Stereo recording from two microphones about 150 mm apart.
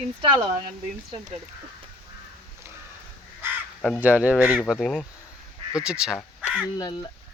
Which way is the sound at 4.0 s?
10° right (ahead or behind).